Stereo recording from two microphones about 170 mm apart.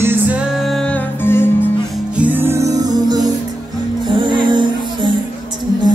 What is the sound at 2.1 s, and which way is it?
Music, 10° right (ahead or behind).